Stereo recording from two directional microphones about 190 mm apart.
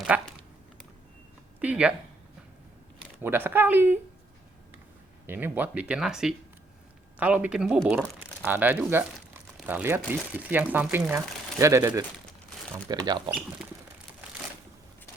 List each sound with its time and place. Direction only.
0.1 s speech: 5° right (ahead or behind)
1.6 s speech: 5° right (ahead or behind)
3.0 s speech: 10° right (ahead or behind)
5.2 s speech: 10° right (ahead or behind)